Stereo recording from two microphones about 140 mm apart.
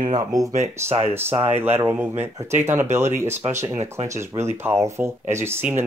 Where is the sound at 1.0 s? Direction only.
15° right (ahead or behind).